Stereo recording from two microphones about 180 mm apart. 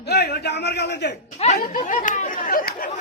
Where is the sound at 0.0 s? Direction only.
65° left (ahead or behind).